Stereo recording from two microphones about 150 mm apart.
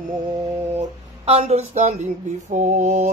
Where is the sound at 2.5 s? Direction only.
55° right (ahead or behind).